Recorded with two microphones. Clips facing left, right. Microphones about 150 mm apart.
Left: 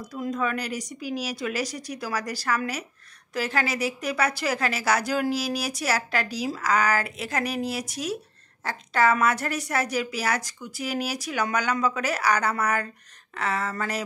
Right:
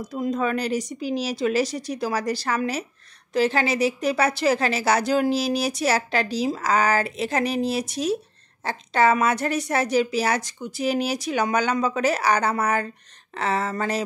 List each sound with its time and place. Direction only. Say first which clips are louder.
0.0 s a woman's voice: right 4 dB; 25° right (ahead or behind)